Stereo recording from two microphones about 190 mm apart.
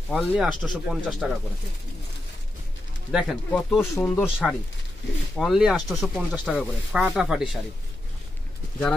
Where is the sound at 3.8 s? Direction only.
10° left (ahead or behind).